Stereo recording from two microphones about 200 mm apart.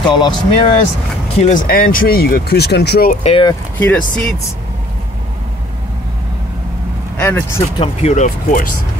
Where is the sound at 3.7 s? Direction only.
5° left (ahead or behind).